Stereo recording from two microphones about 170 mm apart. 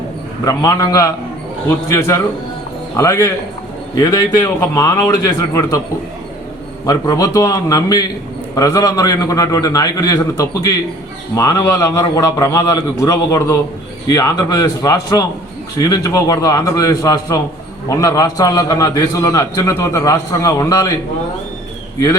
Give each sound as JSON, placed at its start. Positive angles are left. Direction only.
{"t": 0.4, "sound": "a man's voice", "side_deg": 20}
{"t": 6.8, "sound": "a man's voice", "side_deg": 20}